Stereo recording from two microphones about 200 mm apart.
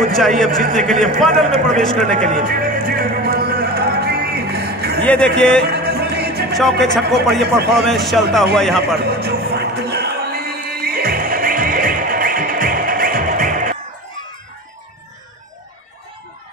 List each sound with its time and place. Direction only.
0.1 s a man's voice: centre (ahead or behind)
2.1 s music: 40° right (ahead or behind)
5.0 s speech: 5° left (ahead or behind)
5.6 s music: 55° right (ahead or behind)
6.6 s a man's voice: centre (ahead or behind)
8.9 s a sound: 55° right (ahead or behind)